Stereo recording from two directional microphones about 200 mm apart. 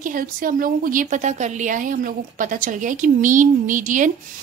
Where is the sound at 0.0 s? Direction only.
45° right (ahead or behind).